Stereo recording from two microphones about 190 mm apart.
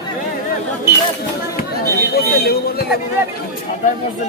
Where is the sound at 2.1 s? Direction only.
55° left (ahead or behind).